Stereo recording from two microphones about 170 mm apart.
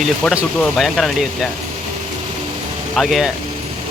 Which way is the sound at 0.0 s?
Centre (ahead or behind).